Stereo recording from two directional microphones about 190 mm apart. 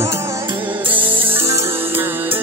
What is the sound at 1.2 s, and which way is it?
Music, 10° right (ahead or behind).